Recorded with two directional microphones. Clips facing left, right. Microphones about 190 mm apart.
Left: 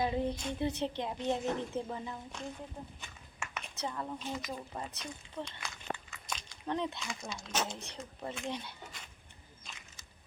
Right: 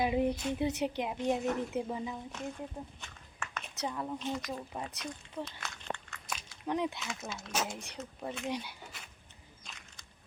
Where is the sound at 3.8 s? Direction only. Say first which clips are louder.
Right 3 dB; 5° right (ahead or behind).